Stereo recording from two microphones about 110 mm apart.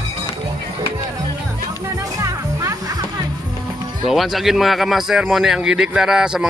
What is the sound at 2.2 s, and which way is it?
Music, 30° right (ahead or behind).